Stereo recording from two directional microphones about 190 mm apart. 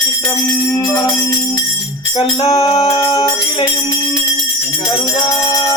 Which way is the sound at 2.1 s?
30° left (ahead or behind).